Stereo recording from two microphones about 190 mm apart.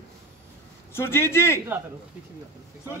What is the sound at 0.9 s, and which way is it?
Speech, 10° left (ahead or behind).